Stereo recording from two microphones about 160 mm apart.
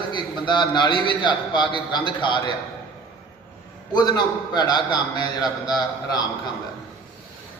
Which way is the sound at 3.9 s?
25° left (ahead or behind).